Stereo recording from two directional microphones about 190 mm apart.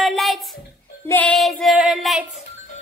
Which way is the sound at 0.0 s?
Centre (ahead or behind).